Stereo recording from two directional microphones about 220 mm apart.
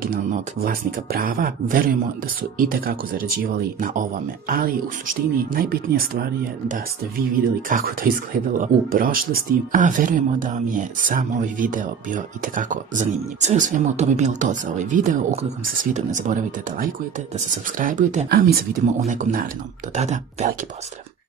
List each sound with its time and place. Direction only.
0.0 s speech: 40° right (ahead or behind)
7.7 s speech: 40° right (ahead or behind)